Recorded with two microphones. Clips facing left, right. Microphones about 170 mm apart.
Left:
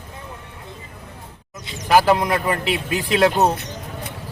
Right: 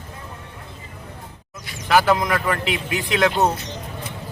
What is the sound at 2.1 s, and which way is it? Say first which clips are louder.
A man's voice: left 1 dB; 35° left (ahead or behind).